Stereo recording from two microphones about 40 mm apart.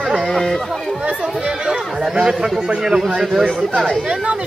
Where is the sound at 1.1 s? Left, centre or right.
Right.